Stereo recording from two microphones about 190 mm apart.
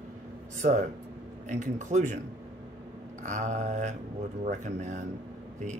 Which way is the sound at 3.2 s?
40° right (ahead or behind).